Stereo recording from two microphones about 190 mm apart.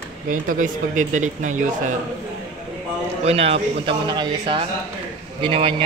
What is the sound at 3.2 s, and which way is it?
Speech, 30° right (ahead or behind).